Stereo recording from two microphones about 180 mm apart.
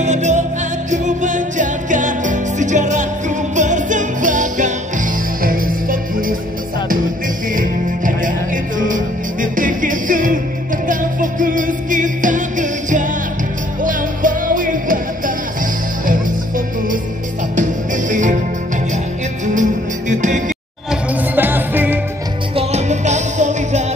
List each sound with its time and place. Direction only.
0.0 s music: 40° right (ahead or behind)
7.5 s music: 45° right (ahead or behind)
19.4 s music: 45° right (ahead or behind)
20.9 s music: 10° right (ahead or behind)
22.6 s music: 35° right (ahead or behind)